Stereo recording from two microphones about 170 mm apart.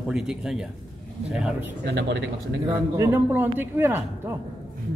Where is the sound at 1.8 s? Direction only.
90° right.